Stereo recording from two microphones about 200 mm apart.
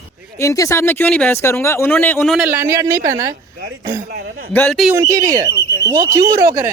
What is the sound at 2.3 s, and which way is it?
Speech, 10° right (ahead or behind).